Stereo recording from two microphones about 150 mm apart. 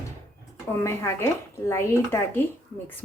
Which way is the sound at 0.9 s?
15° left (ahead or behind).